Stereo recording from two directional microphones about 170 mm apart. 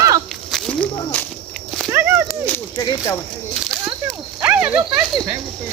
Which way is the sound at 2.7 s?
25° left (ahead or behind).